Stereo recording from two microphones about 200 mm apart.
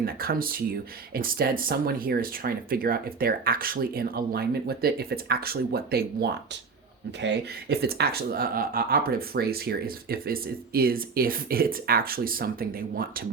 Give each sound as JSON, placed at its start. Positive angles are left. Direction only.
{"t": 0.0, "sound": "speech", "side_deg": -50}